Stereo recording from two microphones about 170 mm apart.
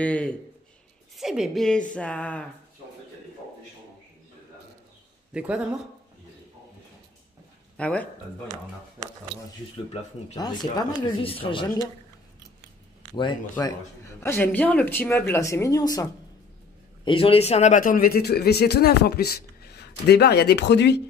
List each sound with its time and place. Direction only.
0.0 s a woman's voice: 5° left (ahead or behind)
5.3 s speech: 5° right (ahead or behind)
7.7 s speech: 5° left (ahead or behind)
10.3 s speech: 25° left (ahead or behind)
13.1 s speech: 30° left (ahead or behind)
14.2 s speech: 10° left (ahead or behind)
17.0 s speech: 35° left (ahead or behind); by 21.0 s 90° left